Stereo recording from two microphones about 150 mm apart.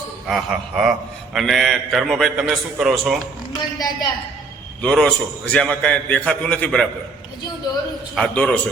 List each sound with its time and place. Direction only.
0.3 s a man's voice: centre (ahead or behind)
3.8 s a man's voice: 25° left (ahead or behind)
4.8 s a man's voice: 5° left (ahead or behind)
8.1 s a man's voice: 5° left (ahead or behind)